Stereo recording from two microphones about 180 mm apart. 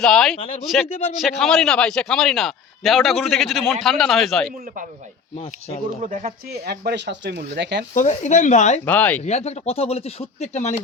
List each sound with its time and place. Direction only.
0.0 s a man's voice: centre (ahead or behind)
0.3 s speech: 35° left (ahead or behind)
1.2 s a man's voice: centre (ahead or behind)
6.0 s speech: 45° right (ahead or behind)
6.5 s speech: 65° right (ahead or behind)
7.9 s speech: 40° left (ahead or behind)
8.8 s speech: 10° left (ahead or behind)
9.2 s speech: 35° left (ahead or behind)